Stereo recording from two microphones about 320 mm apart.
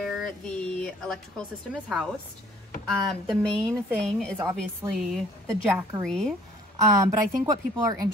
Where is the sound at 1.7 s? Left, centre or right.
Centre.